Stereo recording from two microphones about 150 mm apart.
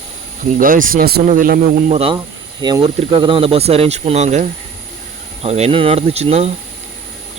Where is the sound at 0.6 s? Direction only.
65° right (ahead or behind); by 1.2 s 80° right.